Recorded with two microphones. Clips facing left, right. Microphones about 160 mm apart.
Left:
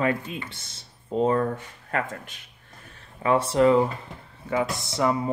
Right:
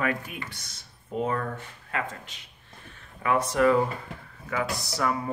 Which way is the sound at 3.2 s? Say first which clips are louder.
Left 3 dB; 30° left (ahead or behind).